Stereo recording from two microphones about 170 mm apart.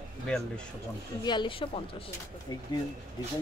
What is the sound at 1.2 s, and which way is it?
Speech, 25° left (ahead or behind).